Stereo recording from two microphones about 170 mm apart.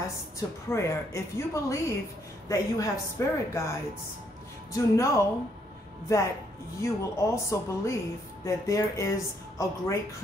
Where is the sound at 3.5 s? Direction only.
15° left (ahead or behind).